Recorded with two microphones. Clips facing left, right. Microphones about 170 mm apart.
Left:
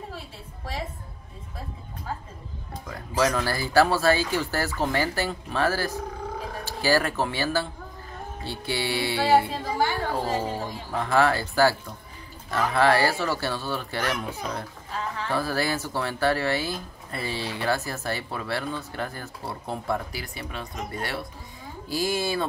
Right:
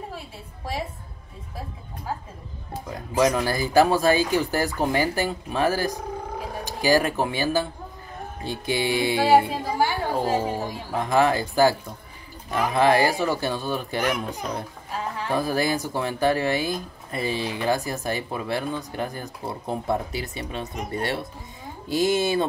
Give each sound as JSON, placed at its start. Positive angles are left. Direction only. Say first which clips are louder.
{"t": 2.9, "sound": "speech", "louder": "right 3 dB", "side_deg": -15}